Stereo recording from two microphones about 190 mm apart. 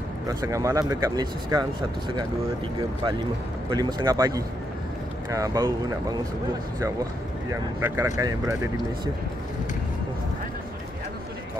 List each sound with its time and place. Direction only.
0.3 s speech: 20° right (ahead or behind)
3.7 s speech: 20° right (ahead or behind)
7.8 s speech: 15° right (ahead or behind)